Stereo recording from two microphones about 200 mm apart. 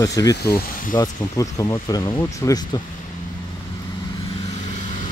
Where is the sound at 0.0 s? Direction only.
15° left (ahead or behind).